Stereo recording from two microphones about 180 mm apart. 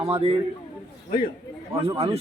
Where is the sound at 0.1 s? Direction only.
35° right (ahead or behind).